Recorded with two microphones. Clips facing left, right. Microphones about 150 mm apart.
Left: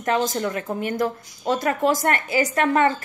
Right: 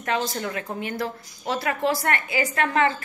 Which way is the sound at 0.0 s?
45° left (ahead or behind).